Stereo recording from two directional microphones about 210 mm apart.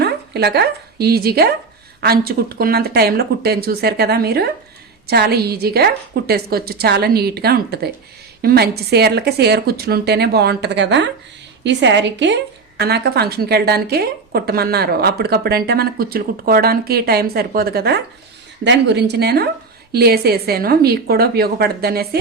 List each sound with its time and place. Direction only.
0.0 s a woman's voice: 50° right (ahead or behind)